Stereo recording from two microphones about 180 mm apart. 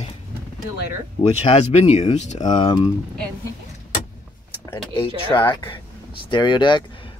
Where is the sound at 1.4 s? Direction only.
35° left (ahead or behind).